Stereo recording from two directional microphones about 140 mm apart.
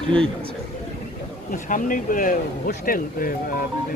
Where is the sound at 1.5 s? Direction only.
70° left (ahead or behind).